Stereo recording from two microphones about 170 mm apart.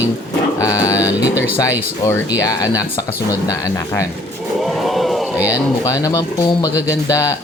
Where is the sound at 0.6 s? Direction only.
20° left (ahead or behind).